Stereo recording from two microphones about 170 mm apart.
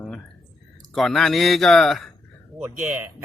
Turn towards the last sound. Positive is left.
turn(degrees=-10)  # may be behind; listen again after turning